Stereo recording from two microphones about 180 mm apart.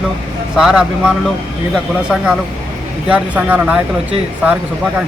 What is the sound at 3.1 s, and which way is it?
Speech, 5° right (ahead or behind).